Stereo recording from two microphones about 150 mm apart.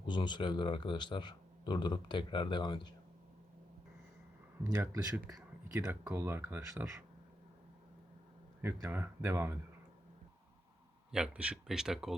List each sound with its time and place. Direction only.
0.0 s speech: 30° left (ahead or behind)
4.6 s speech: 20° right (ahead or behind)
5.1 s speech: 10° right (ahead or behind)
8.6 s speech: 15° right (ahead or behind)
11.1 s speech: 5° right (ahead or behind)